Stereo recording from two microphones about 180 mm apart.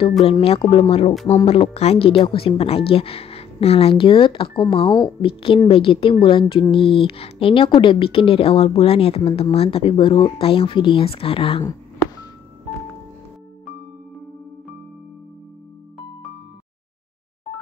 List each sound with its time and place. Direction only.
0.2 s a woman's voice: 30° left (ahead or behind)